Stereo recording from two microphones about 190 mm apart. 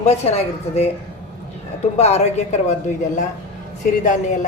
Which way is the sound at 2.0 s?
35° left (ahead or behind).